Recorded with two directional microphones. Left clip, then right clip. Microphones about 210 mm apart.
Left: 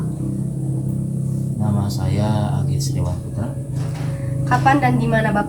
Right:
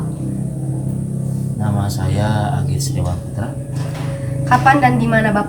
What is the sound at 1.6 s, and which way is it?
Speech, 25° right (ahead or behind).